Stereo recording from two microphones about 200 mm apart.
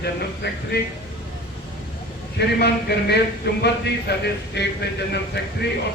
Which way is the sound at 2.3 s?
55° left (ahead or behind).